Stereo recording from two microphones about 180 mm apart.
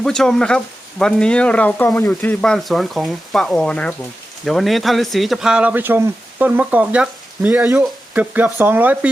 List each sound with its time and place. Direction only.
0.0 s speech: centre (ahead or behind)